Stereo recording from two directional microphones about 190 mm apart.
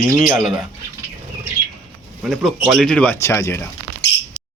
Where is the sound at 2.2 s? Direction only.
Centre (ahead or behind).